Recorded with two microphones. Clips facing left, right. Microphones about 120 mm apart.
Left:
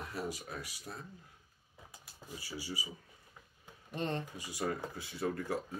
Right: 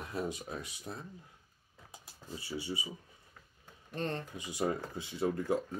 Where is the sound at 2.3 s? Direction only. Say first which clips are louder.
Right 4 dB; 25° right (ahead or behind).